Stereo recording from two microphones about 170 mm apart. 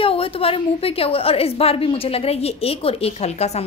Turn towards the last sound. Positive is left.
turn(degrees=40)  # may be behind; listen again after turning